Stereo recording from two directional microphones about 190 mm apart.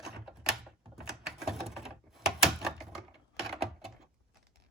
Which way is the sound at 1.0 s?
Centre (ahead or behind).